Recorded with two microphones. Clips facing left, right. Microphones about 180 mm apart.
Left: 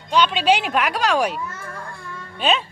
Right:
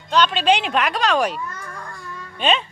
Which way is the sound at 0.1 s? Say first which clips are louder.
Even; 10° left (ahead or behind).